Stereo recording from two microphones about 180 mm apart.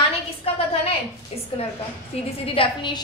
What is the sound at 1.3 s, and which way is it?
A woman's voice, 35° left (ahead or behind).